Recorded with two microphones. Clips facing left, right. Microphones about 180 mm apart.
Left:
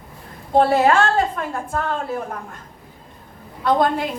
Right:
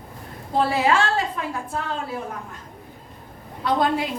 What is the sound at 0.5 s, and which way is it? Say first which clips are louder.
A woman's voice: left 5 dB; 50° left (ahead or behind).